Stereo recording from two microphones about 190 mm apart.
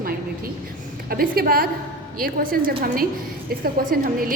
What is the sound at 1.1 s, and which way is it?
A woman's voice, 50° right (ahead or behind).